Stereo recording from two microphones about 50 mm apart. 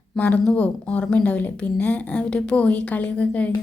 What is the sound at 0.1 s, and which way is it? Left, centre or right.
Speech, centre.